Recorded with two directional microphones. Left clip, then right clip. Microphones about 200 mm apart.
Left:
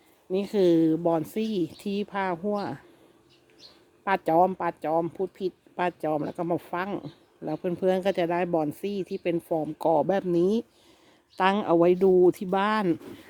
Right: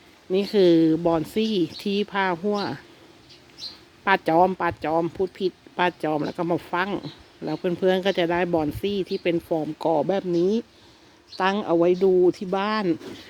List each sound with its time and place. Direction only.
0.3 s speech: 10° left (ahead or behind)
4.0 s speech: 5° left (ahead or behind); by 13.0 s 20° left (ahead or behind)